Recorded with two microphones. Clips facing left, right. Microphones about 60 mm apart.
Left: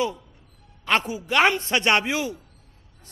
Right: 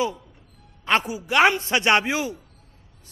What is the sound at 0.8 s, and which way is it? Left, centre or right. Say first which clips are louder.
A woman's voice: right 1 dB; right.